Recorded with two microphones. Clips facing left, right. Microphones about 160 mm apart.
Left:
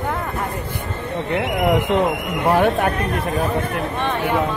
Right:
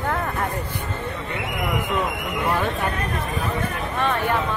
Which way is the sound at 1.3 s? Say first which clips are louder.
Left 9 dB; 70° left (ahead or behind).